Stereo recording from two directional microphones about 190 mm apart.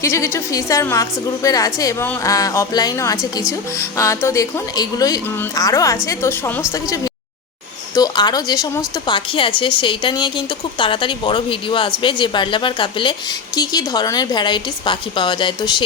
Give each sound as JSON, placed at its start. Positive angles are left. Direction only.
{"t": 0.0, "sound": "a woman's voice", "side_deg": 15}
{"t": 7.9, "sound": "speech", "side_deg": 20}